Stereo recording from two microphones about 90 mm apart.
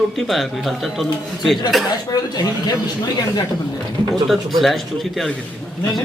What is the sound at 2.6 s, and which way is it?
Speech, 45° left (ahead or behind).